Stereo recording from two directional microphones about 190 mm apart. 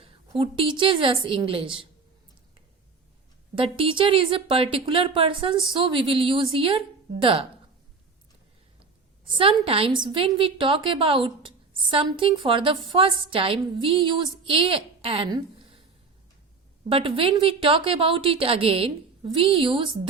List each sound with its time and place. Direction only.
0.0 s a woman's voice: 30° right (ahead or behind)
3.5 s a woman's voice: 30° right (ahead or behind)
9.2 s a woman's voice: 25° right (ahead or behind)
16.9 s a woman's voice: 30° right (ahead or behind)